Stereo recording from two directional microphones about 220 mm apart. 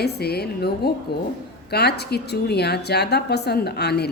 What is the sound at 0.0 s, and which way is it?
A woman's voice, 45° left (ahead or behind).